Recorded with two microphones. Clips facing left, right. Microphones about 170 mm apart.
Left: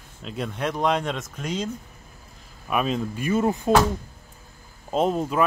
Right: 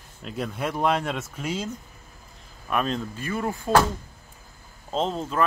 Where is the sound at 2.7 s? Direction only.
5° left (ahead or behind).